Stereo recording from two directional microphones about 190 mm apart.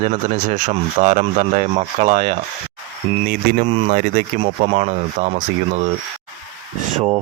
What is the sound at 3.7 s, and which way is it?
Speech, 30° right (ahead or behind).